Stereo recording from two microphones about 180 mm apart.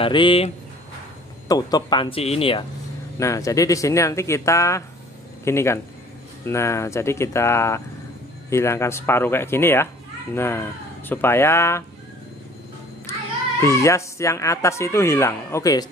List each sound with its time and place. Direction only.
0.0 s speech: 30° left (ahead or behind)
1.5 s speech: 20° left (ahead or behind)
3.2 s speech: 15° left (ahead or behind)
13.6 s speech: 15° left (ahead or behind)